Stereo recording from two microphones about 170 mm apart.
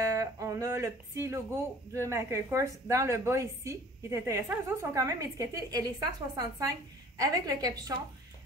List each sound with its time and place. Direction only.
0.0 s a woman's voice: 20° right (ahead or behind)